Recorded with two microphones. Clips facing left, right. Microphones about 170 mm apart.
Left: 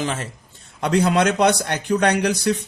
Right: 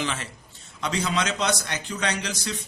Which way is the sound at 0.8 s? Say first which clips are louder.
Left 9 dB; 60° left (ahead or behind).